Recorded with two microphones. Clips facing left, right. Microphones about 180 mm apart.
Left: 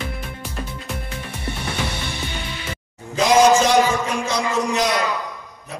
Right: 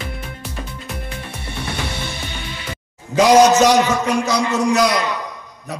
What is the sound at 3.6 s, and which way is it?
A man's voice, 75° right (ahead or behind).